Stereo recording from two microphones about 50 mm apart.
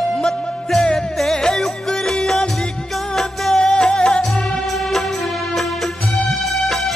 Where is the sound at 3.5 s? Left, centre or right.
Centre.